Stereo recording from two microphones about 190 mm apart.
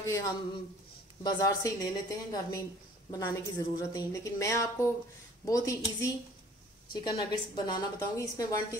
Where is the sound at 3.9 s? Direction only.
15° left (ahead or behind).